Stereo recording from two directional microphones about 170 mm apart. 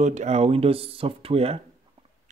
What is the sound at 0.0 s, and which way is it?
Speech, 45° right (ahead or behind).